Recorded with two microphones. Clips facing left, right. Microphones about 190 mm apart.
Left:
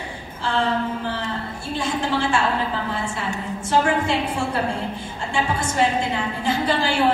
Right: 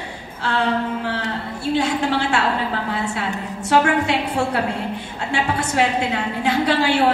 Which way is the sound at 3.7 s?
65° right (ahead or behind).